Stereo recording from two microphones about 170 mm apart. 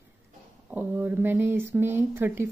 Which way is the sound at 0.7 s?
10° right (ahead or behind).